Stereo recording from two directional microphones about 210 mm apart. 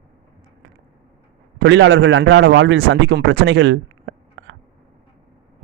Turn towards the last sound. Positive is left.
turn(degrees=-60)  # may be behind; listen again after turning